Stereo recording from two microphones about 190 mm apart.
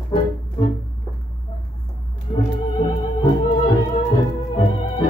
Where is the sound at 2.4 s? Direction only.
25° left (ahead or behind).